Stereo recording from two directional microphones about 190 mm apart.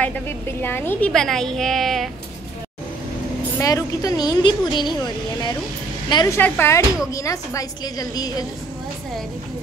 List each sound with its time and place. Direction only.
0.6 s a woman's voice: 10° left (ahead or behind)
3.5 s a woman's voice: 20° left (ahead or behind)
6.0 s a woman's voice: 20° left (ahead or behind)